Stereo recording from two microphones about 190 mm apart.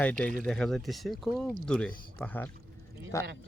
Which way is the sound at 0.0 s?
5° left (ahead or behind).